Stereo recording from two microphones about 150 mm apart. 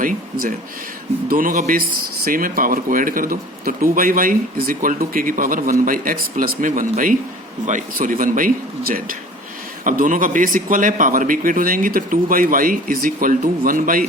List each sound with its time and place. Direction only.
1.3 s a man's voice: 65° right (ahead or behind)